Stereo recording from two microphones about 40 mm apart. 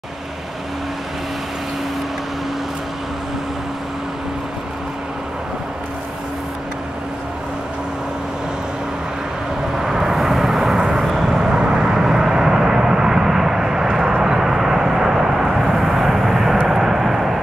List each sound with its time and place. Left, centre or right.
9.8 s vehicle: centre